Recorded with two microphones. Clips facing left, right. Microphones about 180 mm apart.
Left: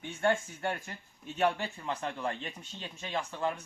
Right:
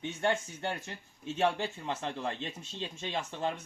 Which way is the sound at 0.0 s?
20° right (ahead or behind).